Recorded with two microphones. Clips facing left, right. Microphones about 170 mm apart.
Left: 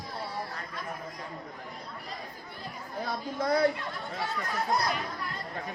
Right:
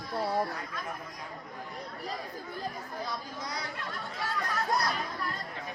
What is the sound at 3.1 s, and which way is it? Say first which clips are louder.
Speech: left 9 dB; 55° left (ahead or behind).